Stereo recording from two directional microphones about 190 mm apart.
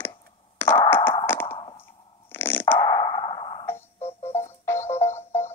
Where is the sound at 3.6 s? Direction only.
10° left (ahead or behind).